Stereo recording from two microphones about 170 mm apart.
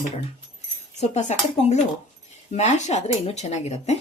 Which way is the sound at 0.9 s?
40° left (ahead or behind).